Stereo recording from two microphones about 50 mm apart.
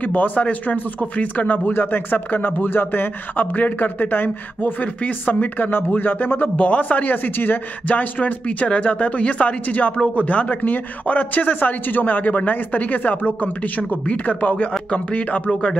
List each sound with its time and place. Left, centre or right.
0.0 s a man's voice: left